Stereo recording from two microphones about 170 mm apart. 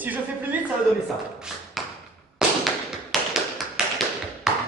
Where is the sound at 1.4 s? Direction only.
5° right (ahead or behind).